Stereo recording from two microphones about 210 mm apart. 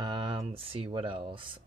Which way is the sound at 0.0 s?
20° right (ahead or behind).